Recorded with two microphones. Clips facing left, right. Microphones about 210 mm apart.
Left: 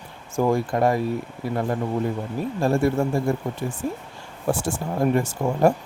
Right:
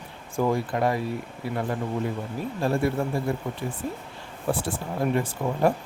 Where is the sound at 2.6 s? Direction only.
45° left (ahead or behind).